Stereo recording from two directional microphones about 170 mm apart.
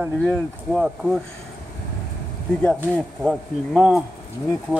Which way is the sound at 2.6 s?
Centre (ahead or behind).